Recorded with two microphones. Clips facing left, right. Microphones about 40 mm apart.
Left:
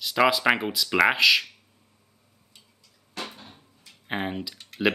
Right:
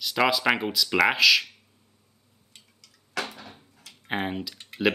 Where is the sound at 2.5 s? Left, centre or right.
Right.